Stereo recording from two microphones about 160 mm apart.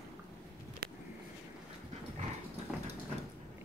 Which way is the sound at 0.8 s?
70° right (ahead or behind).